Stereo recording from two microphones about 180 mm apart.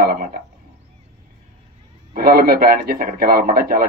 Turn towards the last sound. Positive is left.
turn(degrees=-55)  # may be behind; listen again after turning